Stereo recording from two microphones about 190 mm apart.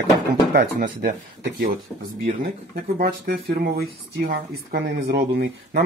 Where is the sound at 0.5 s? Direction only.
50° right (ahead or behind).